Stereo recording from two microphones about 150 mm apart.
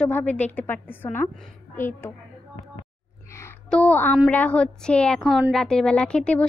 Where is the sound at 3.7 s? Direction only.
10° left (ahead or behind).